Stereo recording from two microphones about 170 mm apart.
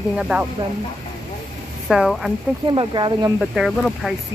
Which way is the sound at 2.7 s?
30° right (ahead or behind).